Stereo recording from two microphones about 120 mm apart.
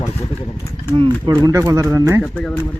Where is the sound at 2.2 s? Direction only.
10° left (ahead or behind).